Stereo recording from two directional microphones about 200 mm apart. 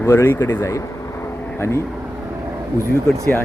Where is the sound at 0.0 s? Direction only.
10° left (ahead or behind).